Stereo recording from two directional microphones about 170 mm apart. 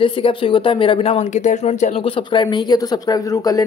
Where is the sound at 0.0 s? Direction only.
30° left (ahead or behind).